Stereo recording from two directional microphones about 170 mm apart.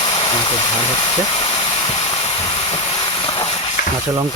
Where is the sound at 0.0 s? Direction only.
25° left (ahead or behind).